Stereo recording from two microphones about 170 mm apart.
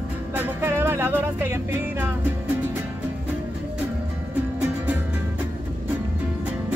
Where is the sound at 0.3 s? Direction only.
10° right (ahead or behind).